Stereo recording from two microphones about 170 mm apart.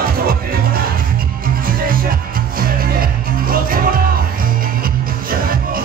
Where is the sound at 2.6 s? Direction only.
60° right (ahead or behind).